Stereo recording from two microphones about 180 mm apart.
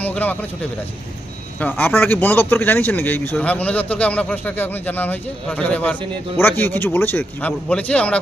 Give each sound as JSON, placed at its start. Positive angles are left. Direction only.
{"t": 0.0, "sound": "speech", "side_deg": 10}